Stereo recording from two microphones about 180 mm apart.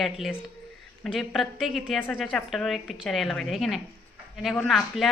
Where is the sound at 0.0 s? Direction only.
Centre (ahead or behind).